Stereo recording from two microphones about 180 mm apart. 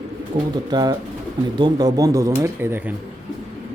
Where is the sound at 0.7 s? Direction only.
20° right (ahead or behind).